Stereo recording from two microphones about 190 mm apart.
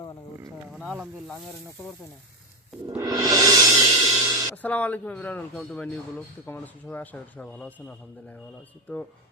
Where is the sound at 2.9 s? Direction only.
20° right (ahead or behind).